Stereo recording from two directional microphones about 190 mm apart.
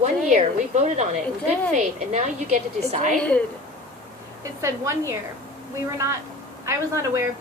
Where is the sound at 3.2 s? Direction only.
5° left (ahead or behind).